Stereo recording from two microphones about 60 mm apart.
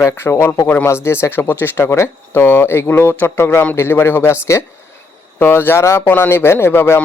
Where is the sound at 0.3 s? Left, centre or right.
Left.